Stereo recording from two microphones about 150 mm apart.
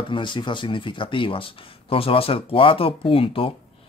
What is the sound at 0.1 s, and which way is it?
Speech, 30° left (ahead or behind).